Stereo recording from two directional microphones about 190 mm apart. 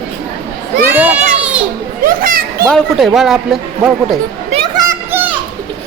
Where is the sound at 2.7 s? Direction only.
Centre (ahead or behind).